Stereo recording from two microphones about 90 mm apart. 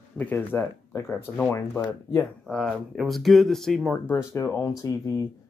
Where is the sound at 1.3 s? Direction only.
10° left (ahead or behind).